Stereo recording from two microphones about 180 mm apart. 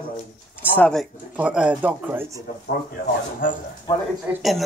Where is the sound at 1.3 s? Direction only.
5° right (ahead or behind).